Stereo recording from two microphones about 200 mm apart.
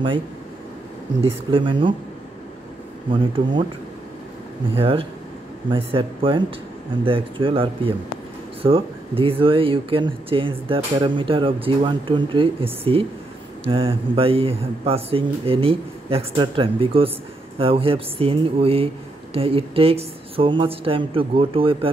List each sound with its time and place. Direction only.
1.2 s speech: 25° right (ahead or behind)
3.1 s speech: 25° right (ahead or behind)
4.7 s speech: 25° right (ahead or behind)
13.7 s speech: 25° right (ahead or behind)